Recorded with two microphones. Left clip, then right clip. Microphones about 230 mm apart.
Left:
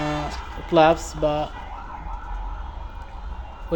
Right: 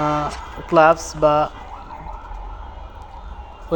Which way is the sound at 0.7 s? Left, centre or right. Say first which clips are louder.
Right 3 dB; centre.